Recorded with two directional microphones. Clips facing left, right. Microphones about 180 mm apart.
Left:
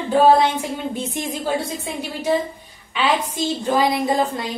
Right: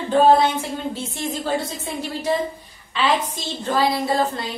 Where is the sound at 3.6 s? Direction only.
15° left (ahead or behind).